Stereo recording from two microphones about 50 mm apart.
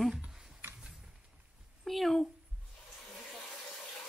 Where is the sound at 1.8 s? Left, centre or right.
Centre.